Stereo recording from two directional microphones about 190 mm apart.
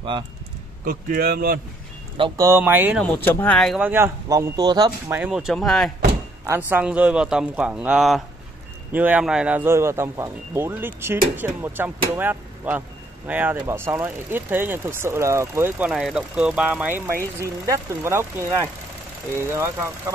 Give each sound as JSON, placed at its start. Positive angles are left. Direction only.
{"t": 0.8, "sound": "speech", "side_deg": -50}
{"t": 2.1, "sound": "speech", "side_deg": -20}
{"t": 3.0, "sound": "speech", "side_deg": 5}
{"t": 5.1, "sound": "speech", "side_deg": -5}
{"t": 6.4, "sound": "speech", "side_deg": -10}